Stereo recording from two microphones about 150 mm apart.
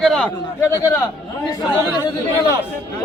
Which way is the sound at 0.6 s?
20° left (ahead or behind).